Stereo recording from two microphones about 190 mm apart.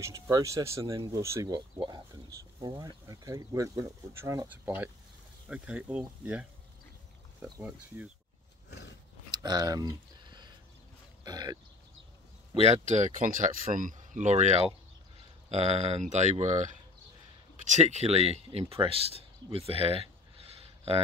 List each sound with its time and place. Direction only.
0.0 s speech: 15° right (ahead or behind)
8.6 s roar: 65° left (ahead or behind)
9.3 s a sound: 20° right (ahead or behind)
11.2 s speech: 20° right (ahead or behind)
12.5 s speech: 35° right (ahead or behind)